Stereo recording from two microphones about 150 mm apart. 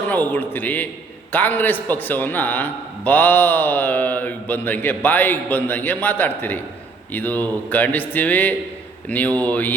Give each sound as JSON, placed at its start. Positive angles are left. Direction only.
{"t": 0.1, "sound": "a man's voice", "side_deg": 10}